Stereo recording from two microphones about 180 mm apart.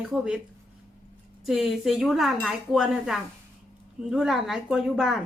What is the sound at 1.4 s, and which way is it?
Speech, centre (ahead or behind).